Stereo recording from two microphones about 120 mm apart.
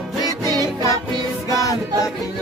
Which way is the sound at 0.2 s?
30° right (ahead or behind).